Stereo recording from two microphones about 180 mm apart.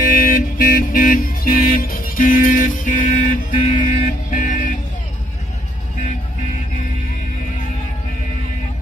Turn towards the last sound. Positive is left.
turn(degrees=45)  # may be behind; listen again after turning